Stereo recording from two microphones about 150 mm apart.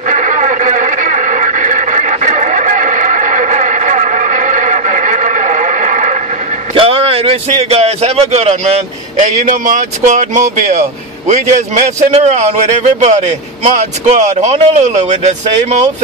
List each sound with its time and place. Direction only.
0.1 s radio: 55° right (ahead or behind)
6.7 s a man's voice: 40° right (ahead or behind)